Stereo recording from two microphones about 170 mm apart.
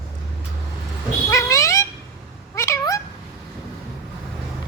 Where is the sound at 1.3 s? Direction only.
15° left (ahead or behind).